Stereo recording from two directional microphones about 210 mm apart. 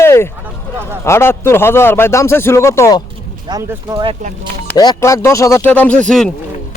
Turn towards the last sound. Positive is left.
turn(degrees=5)  # may be behind; listen again after turning